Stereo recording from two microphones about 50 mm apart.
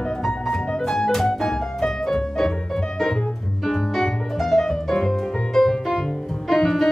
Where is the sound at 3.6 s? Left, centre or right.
Centre.